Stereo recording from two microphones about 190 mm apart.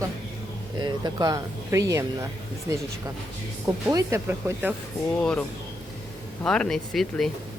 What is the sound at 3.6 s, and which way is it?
Speech, 15° right (ahead or behind).